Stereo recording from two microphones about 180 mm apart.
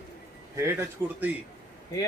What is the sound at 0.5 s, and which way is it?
Speech, 15° right (ahead or behind).